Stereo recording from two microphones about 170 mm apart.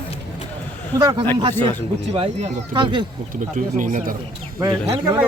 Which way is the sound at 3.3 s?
50° right (ahead or behind).